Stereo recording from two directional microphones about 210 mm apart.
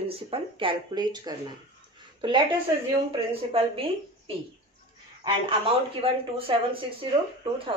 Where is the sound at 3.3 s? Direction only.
25° right (ahead or behind).